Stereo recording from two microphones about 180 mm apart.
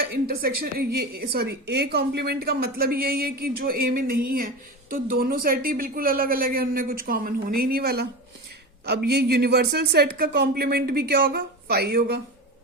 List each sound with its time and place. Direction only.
0.3 s a woman's voice: 55° right (ahead or behind)